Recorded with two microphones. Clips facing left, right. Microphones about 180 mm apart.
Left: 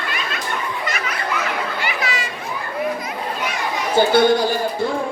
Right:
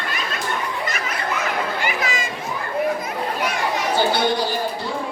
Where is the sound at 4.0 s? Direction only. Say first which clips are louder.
Left 5 dB; 50° left (ahead or behind).